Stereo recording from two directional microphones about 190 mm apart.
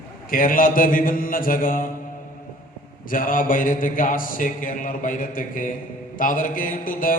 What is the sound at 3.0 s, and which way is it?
Mantra, 45° left (ahead or behind).